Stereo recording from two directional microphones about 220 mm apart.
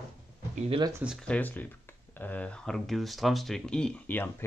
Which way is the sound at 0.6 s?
25° right (ahead or behind).